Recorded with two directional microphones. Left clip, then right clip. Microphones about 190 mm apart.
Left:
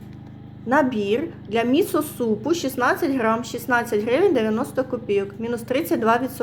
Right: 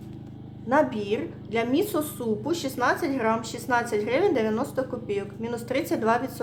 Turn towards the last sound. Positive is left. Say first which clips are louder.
# left 4 dB
turn(degrees=15)  # may be behind; listen again after turning